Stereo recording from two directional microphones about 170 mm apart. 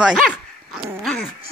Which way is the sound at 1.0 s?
Centre (ahead or behind).